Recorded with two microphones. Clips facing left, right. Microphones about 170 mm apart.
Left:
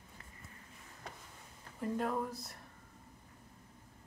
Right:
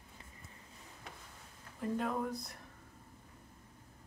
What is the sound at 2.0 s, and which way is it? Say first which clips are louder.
Speech: even; centre (ahead or behind).